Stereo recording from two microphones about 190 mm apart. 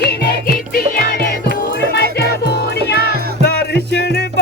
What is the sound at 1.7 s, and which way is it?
Music, 60° left (ahead or behind).